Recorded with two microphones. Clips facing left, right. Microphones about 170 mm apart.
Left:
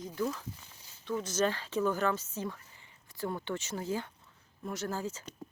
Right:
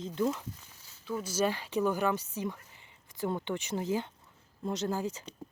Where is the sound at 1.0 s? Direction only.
5° right (ahead or behind).